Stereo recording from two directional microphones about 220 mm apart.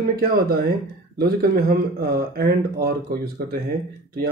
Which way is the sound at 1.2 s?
45° right (ahead or behind).